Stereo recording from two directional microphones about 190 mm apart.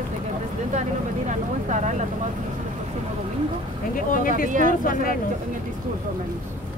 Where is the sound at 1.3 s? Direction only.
40° right (ahead or behind).